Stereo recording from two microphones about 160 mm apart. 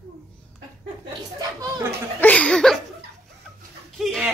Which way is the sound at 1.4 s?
25° right (ahead or behind).